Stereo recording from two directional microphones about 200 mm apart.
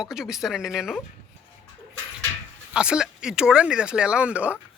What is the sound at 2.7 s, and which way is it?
Speech, 5° right (ahead or behind).